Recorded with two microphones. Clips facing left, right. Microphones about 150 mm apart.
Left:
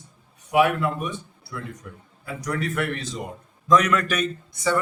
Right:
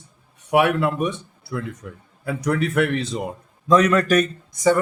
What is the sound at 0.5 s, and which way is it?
A man's voice, 75° right (ahead or behind).